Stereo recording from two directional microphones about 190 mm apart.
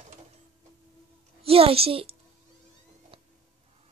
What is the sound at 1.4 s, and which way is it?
Speech, 30° right (ahead or behind).